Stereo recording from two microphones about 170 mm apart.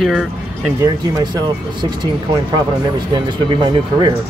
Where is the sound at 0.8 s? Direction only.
20° right (ahead or behind).